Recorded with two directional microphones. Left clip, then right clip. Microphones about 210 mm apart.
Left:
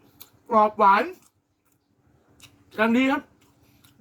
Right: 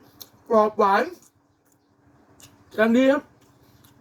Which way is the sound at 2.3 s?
10° left (ahead or behind).